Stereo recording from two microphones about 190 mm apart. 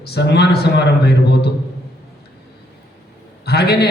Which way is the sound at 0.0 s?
60° left (ahead or behind).